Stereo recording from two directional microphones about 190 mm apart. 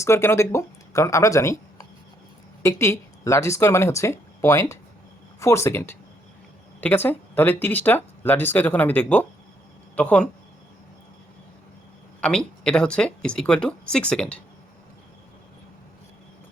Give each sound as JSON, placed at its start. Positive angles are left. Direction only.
{"t": 0.0, "sound": "speech", "side_deg": 15}
{"t": 12.2, "sound": "speech", "side_deg": 5}